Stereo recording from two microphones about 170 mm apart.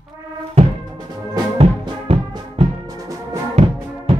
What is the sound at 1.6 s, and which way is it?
Music, 35° right (ahead or behind).